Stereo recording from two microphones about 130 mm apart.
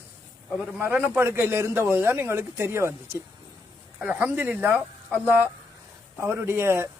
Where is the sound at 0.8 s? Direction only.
15° right (ahead or behind).